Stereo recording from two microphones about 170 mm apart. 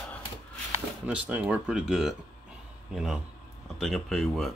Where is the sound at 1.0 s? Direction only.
10° right (ahead or behind).